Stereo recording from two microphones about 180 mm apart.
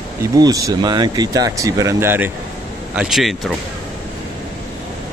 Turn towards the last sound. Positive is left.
turn(degrees=0)  # may be behind; listen again after turning